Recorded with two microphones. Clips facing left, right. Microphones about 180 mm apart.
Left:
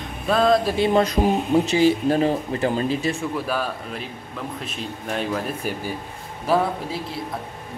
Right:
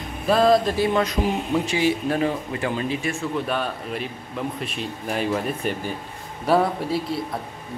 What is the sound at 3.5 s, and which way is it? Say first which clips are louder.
Speech: even; centre (ahead or behind).